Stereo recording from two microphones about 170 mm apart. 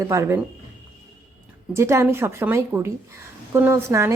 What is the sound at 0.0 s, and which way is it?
Speech, 15° right (ahead or behind).